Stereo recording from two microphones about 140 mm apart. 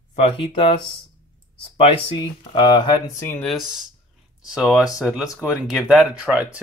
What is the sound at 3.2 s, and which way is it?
Speech, 15° left (ahead or behind).